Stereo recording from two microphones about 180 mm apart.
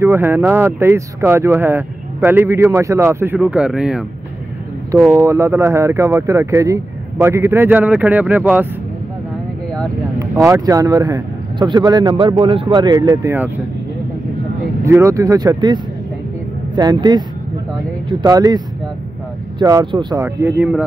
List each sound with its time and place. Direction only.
0.0 s speech: 10° right (ahead or behind)
5.1 s speech: 15° right (ahead or behind)
10.1 s speech: 20° right (ahead or behind)
14.8 s speech: 15° right (ahead or behind)
19.6 s speech: 20° right (ahead or behind)
20.2 s speech: 10° right (ahead or behind)